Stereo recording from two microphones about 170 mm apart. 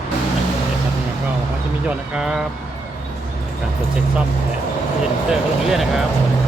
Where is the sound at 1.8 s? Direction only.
5° right (ahead or behind).